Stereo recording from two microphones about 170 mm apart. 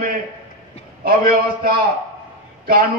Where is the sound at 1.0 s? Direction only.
60° right (ahead or behind).